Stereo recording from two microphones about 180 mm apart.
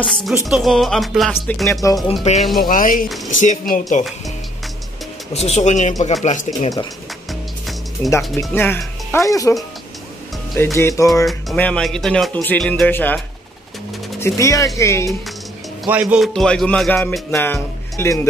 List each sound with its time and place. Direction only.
0.0 s speech: centre (ahead or behind)
2.6 s speech: 50° left (ahead or behind)
5.3 s speech: 35° left (ahead or behind)
7.2 s music: centre (ahead or behind)
8.4 s speech: 15° left (ahead or behind)
10.6 s speech: 15° left (ahead or behind)
11.2 s speech: 5° left (ahead or behind)
14.2 s speech: 15° left (ahead or behind)
15.8 s speech: 5° right (ahead or behind); by 18.2 s 15° left (ahead or behind)